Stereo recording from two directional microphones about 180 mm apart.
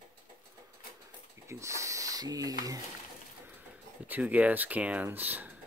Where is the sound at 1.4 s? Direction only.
15° right (ahead or behind).